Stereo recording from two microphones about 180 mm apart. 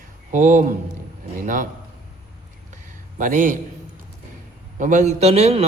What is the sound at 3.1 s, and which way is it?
Speech, 45° right (ahead or behind).